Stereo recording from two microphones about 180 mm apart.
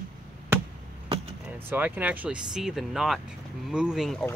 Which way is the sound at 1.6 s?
10° right (ahead or behind).